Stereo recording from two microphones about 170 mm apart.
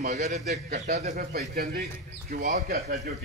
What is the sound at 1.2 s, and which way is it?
Speech, 65° right (ahead or behind).